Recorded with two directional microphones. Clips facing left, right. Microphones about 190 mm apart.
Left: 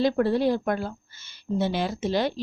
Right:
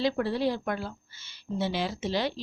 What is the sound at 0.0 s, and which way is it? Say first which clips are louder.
Speech: left 5 dB; 50° left (ahead or behind).